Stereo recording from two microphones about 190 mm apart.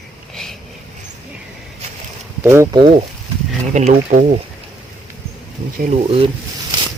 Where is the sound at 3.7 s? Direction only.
40° right (ahead or behind).